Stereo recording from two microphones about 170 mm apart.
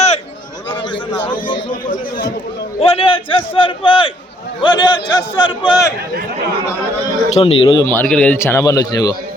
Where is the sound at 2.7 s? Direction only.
35° left (ahead or behind).